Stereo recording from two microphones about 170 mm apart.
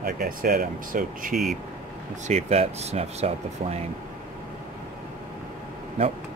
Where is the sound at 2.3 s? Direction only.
40° right (ahead or behind).